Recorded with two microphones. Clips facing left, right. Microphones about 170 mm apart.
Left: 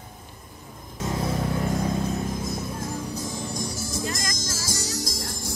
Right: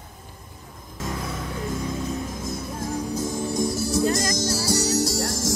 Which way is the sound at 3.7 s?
65° right (ahead or behind).